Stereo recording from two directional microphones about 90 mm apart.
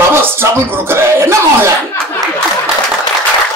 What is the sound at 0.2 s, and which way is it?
Speech, 25° right (ahead or behind).